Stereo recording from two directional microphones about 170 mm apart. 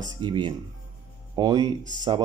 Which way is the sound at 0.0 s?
25° right (ahead or behind).